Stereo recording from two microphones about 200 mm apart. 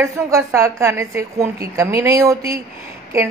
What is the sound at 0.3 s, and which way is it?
Speech, 15° right (ahead or behind).